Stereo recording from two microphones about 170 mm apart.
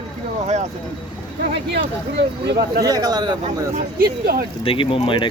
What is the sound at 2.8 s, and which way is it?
Speech, 20° right (ahead or behind).